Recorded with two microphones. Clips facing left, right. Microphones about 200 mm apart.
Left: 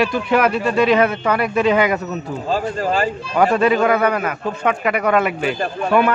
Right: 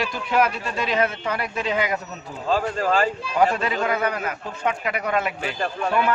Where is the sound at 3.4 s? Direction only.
65° left (ahead or behind).